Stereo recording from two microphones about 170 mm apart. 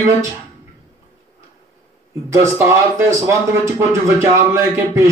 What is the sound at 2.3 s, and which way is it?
A man's voice, 20° right (ahead or behind).